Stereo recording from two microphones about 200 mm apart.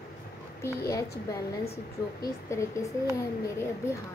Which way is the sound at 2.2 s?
15° left (ahead or behind).